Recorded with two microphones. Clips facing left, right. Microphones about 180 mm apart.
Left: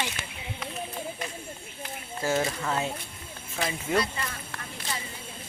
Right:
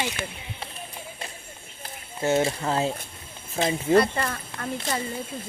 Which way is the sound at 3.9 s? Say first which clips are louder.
Right 7 dB; 55° right (ahead or behind).